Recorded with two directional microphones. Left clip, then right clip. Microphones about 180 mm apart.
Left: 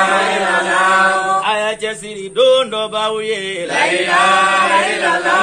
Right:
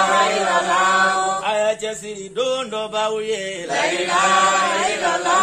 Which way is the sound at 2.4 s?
75° right (ahead or behind).